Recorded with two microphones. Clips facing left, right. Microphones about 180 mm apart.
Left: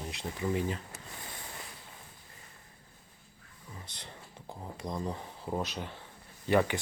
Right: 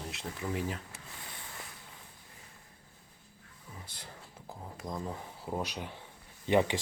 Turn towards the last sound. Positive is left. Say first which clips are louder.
# even
turn(degrees=-20)  # may be behind; listen again after turning